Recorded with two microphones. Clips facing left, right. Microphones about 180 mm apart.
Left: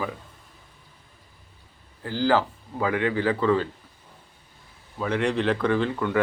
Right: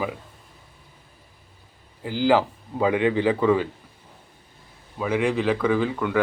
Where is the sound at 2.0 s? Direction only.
15° right (ahead or behind).